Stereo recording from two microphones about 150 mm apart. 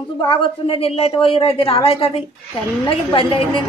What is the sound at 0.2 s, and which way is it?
A woman's voice, 35° left (ahead or behind).